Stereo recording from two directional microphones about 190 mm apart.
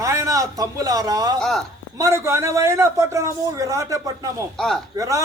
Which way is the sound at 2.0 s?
15° right (ahead or behind).